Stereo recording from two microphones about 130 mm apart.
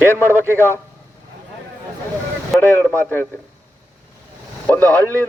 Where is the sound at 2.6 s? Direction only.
10° left (ahead or behind).